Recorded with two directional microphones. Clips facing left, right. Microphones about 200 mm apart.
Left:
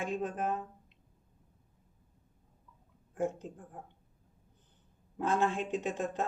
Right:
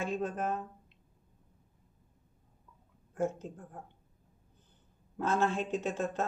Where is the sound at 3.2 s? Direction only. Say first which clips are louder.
Right 1 dB; 15° left (ahead or behind).